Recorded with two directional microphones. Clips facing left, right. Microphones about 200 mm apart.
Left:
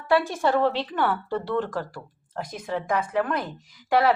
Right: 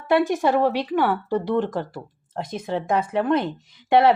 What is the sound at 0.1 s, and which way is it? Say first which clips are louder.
Speech: right 3 dB; 20° right (ahead or behind).